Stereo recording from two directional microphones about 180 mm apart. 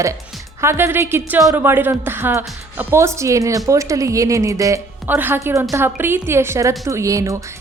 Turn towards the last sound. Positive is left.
turn(degrees=-15)  # may be behind; listen again after turning